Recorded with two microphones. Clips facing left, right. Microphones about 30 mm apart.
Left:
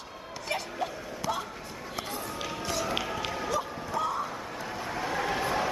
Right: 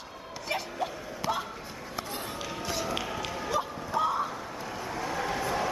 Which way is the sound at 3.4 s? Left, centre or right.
Centre.